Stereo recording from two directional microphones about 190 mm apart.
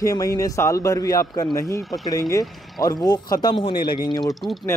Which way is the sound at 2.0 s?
20° left (ahead or behind).